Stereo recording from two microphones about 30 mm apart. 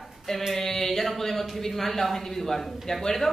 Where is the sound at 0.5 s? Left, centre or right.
Centre.